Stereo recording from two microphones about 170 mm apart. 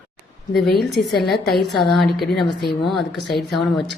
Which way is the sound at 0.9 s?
Centre (ahead or behind).